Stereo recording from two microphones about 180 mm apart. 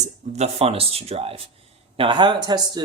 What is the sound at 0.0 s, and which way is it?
Speech, 35° right (ahead or behind).